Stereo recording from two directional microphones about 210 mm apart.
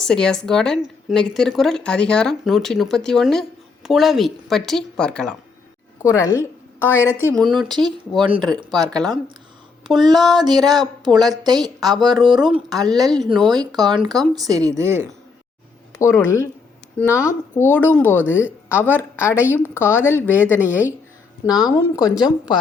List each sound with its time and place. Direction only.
0.0 s a woman's voice: 5° left (ahead or behind)
7.4 s a woman's voice: centre (ahead or behind)
8.2 s a woman's voice: 25° right (ahead or behind)
9.8 s a woman's voice: centre (ahead or behind)
10.4 s a woman's voice: 20° right (ahead or behind)
11.9 s a woman's voice: centre (ahead or behind)
12.7 s a woman's voice: 20° right (ahead or behind)
16.0 s speech: 10° left (ahead or behind)